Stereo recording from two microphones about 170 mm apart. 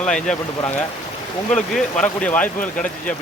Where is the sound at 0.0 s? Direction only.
5° left (ahead or behind).